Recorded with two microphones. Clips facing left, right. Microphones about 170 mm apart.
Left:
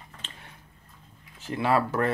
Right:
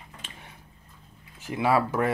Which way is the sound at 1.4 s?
10° right (ahead or behind).